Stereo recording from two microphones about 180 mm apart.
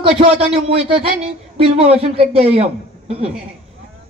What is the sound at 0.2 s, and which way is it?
Speech, 35° right (ahead or behind).